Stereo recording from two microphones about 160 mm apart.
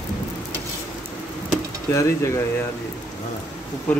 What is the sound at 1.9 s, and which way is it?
Speech, 20° left (ahead or behind).